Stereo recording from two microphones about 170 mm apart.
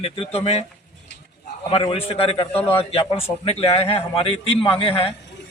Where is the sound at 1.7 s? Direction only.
30° left (ahead or behind).